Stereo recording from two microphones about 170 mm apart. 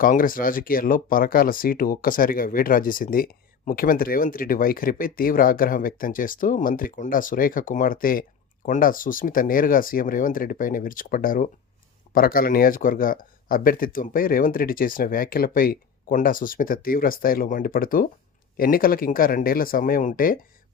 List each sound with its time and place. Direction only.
0.0 s speech: 55° left (ahead or behind)